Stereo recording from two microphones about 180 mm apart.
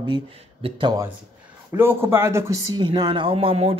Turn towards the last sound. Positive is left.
turn(degrees=-35)  # may be behind; listen again after turning